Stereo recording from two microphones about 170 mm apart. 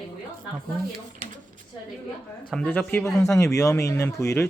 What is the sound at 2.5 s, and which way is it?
Speech, 5° left (ahead or behind).